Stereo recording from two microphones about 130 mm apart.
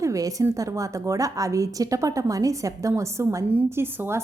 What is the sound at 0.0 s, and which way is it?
A woman's voice, 25° right (ahead or behind).